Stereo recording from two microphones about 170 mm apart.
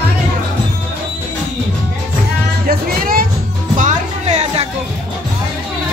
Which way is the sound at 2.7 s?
60° right (ahead or behind).